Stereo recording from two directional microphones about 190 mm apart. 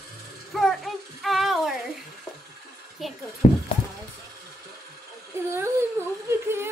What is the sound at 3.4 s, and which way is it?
Speech, 45° left (ahead or behind).